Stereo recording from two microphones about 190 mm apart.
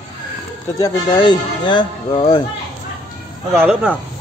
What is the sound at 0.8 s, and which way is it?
Speech, 20° left (ahead or behind).